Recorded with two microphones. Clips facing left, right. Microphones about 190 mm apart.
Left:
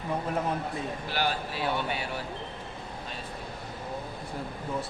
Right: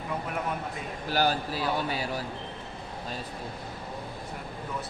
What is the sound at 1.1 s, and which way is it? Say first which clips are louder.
Speech: right 5 dB; 40° right (ahead or behind).